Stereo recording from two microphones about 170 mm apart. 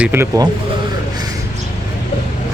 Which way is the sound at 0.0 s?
15° right (ahead or behind).